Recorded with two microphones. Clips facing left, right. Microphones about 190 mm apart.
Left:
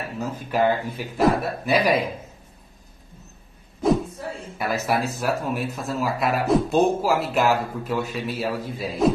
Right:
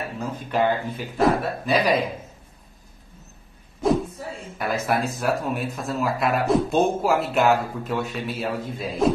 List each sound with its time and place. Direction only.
0.2 s speech: 5° left (ahead or behind)
4.6 s a man's voice: 5° left (ahead or behind)